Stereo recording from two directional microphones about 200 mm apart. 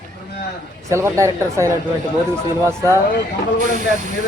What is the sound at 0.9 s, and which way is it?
Speech, 15° right (ahead or behind).